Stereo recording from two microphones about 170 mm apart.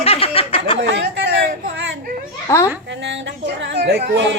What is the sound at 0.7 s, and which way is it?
A woman's voice, 90° right.